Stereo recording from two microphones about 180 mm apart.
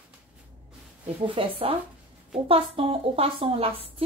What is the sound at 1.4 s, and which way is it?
Speech, 30° right (ahead or behind).